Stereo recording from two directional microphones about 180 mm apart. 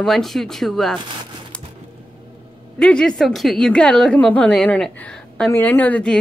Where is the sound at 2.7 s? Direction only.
5° left (ahead or behind).